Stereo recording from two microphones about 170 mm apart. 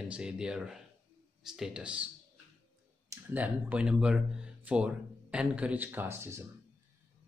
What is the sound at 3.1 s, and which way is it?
Speech, 10° right (ahead or behind).